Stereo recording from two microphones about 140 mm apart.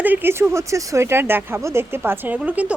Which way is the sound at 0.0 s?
15° right (ahead or behind).